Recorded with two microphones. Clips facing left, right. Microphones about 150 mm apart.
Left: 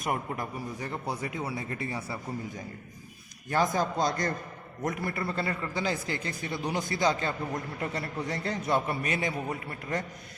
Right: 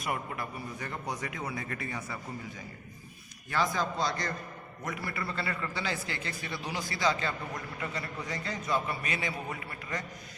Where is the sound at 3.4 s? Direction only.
45° left (ahead or behind).